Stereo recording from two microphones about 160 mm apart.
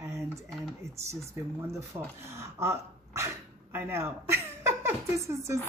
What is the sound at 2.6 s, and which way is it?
Speech, 15° right (ahead or behind).